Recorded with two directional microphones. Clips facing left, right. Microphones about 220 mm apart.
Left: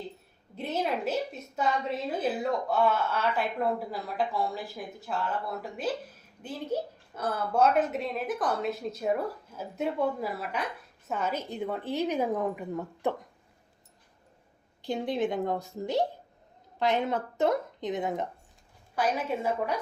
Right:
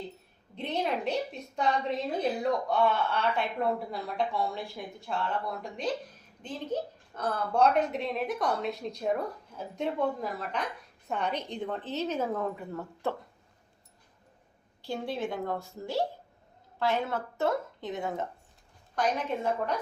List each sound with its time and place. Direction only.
0.5 s a woman's voice: 5° left (ahead or behind)
14.8 s a woman's voice: 15° left (ahead or behind)
18.9 s a woman's voice: 5° left (ahead or behind)